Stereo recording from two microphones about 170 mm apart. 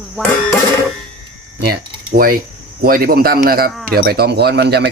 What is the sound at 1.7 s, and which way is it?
Speech, 60° right (ahead or behind).